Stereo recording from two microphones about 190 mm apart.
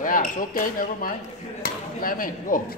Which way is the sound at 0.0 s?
45° left (ahead or behind).